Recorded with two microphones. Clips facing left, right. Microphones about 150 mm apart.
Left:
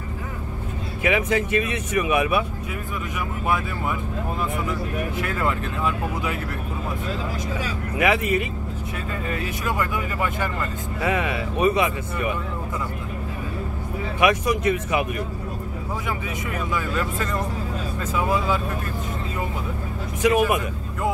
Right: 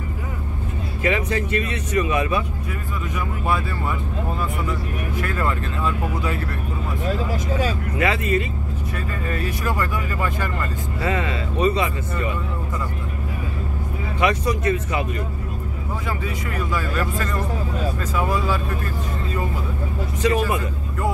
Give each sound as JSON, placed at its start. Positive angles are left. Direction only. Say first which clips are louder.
{"t": 1.0, "sound": "speech", "louder": "left 1 dB", "side_deg": 15}
{"t": 5.2, "sound": "speech", "louder": "right 2 dB", "side_deg": 15}
{"t": 8.0, "sound": "speech", "louder": "left 1 dB", "side_deg": 15}
{"t": 14.2, "sound": "speech", "louder": "left 1 dB", "side_deg": 15}
{"t": 20.2, "sound": "speech", "louder": "left 2 dB", "side_deg": 15}